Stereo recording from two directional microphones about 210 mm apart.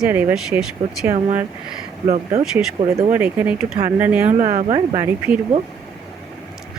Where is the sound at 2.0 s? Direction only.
30° right (ahead or behind).